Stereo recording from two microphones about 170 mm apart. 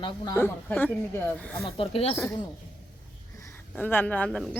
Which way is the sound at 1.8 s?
35° left (ahead or behind).